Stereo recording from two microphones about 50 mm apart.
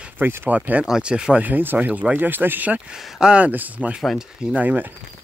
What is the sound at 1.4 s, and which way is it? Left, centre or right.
Speech, right.